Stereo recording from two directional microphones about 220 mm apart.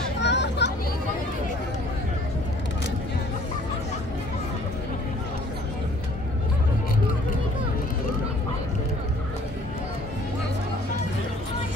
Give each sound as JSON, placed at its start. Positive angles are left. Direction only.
{"t": 0.2, "sound": "children playing", "side_deg": 50}